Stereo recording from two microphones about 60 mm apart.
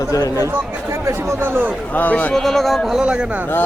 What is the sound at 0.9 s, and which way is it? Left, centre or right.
Speech, right.